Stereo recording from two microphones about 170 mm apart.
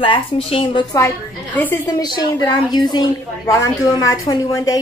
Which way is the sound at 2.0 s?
25° left (ahead or behind).